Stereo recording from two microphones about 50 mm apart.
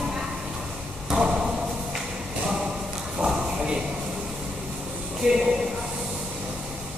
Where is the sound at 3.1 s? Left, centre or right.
Centre.